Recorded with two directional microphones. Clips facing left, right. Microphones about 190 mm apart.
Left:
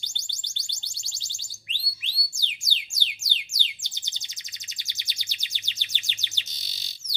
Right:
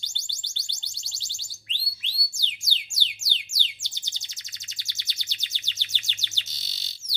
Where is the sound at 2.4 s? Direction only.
15° left (ahead or behind).